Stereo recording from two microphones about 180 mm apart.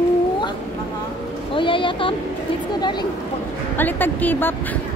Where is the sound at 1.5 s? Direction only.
30° left (ahead or behind).